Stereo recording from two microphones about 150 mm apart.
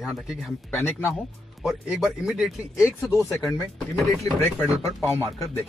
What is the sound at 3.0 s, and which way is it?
Speech, 20° left (ahead or behind).